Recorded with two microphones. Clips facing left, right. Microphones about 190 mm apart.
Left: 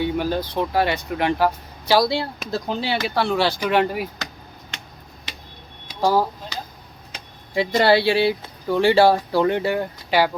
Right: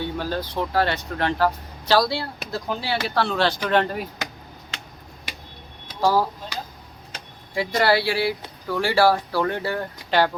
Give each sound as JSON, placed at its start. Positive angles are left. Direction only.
{"t": 0.0, "sound": "speech", "side_deg": 15}
{"t": 5.9, "sound": "speech", "side_deg": 20}
{"t": 7.5, "sound": "speech", "side_deg": 25}